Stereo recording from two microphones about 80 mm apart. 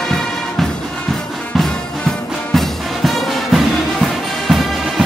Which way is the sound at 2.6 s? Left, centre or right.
Centre.